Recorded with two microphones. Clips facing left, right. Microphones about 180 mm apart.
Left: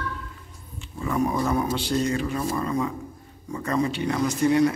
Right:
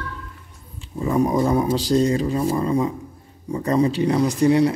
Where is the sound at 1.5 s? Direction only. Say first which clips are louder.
Right 5 dB; 35° right (ahead or behind).